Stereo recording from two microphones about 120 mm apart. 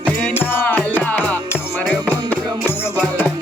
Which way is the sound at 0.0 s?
15° left (ahead or behind).